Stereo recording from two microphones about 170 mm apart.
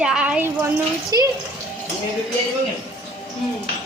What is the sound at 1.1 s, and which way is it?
Speech, 20° right (ahead or behind).